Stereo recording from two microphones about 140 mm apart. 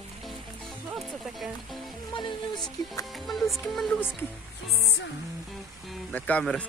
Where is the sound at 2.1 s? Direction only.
35° left (ahead or behind).